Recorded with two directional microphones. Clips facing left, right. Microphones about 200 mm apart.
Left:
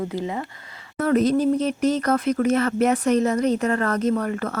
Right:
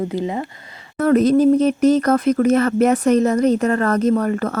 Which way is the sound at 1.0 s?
50° right (ahead or behind).